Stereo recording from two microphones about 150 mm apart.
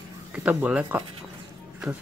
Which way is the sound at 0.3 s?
10° right (ahead or behind).